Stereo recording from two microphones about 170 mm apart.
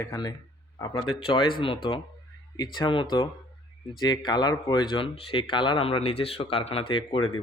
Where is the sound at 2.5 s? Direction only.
25° left (ahead or behind).